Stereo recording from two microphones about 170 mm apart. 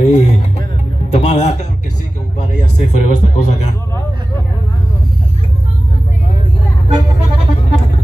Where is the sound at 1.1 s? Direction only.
40° left (ahead or behind).